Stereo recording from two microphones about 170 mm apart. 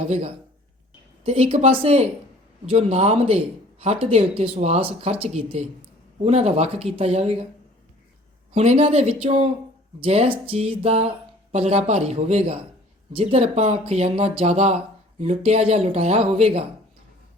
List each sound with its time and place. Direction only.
0.0 s speech: 40° right (ahead or behind)
8.5 s speech: 40° right (ahead or behind)